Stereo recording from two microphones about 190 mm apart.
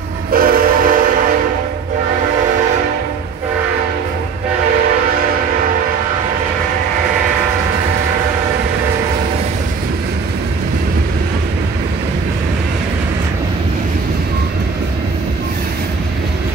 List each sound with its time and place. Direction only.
0.3 s train: 50° right (ahead or behind)